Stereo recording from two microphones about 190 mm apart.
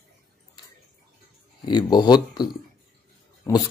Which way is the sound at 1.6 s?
25° left (ahead or behind).